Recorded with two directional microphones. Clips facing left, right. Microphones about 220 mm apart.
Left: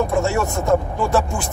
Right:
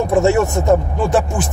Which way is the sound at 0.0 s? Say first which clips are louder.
Right 5 dB; 20° right (ahead or behind).